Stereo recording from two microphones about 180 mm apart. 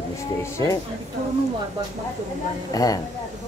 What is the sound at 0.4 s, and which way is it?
Speech, 15° left (ahead or behind).